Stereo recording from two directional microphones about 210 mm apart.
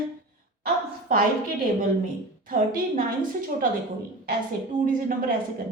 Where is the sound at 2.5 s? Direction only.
40° right (ahead or behind).